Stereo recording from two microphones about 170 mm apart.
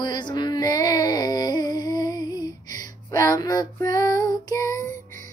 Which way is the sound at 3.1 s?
20° left (ahead or behind).